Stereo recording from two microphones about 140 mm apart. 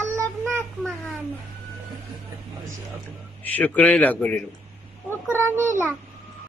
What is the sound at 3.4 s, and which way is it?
Speech, 10° left (ahead or behind).